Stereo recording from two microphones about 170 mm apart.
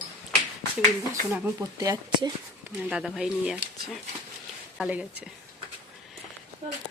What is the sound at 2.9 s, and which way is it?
A woman's voice, 5° right (ahead or behind).